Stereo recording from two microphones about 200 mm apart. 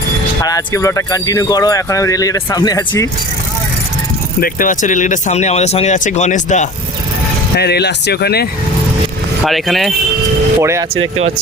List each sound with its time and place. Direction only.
0.4 s speech: 15° left (ahead or behind)
4.4 s speech: 45° left (ahead or behind)
7.5 s speech: 55° left (ahead or behind)
9.5 s speech: centre (ahead or behind)
10.6 s speech: 15° right (ahead or behind)